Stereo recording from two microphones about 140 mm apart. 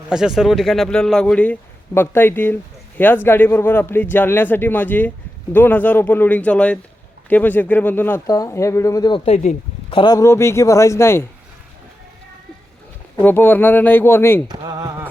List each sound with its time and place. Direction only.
0.1 s a man's voice: 5° right (ahead or behind); by 9.2 s 30° left (ahead or behind)
9.2 s speech: 55° left (ahead or behind)
9.9 s a man's voice: 30° left (ahead or behind)
13.2 s a man's voice: 15° left (ahead or behind)
14.4 s speech: 30° right (ahead or behind)